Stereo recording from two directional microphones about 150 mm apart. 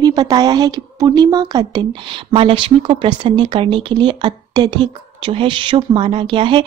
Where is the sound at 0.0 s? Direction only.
25° right (ahead or behind).